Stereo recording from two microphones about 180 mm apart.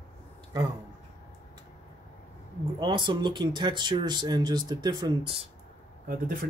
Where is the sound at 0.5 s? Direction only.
25° right (ahead or behind).